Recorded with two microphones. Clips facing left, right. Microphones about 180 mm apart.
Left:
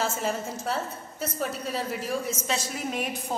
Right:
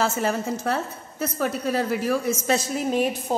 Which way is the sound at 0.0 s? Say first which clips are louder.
Right 5 dB; 70° right (ahead or behind).